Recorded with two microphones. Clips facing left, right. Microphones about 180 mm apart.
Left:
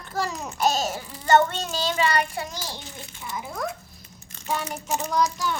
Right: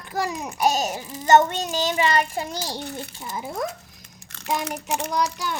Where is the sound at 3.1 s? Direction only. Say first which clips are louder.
Right 1 dB; 35° right (ahead or behind).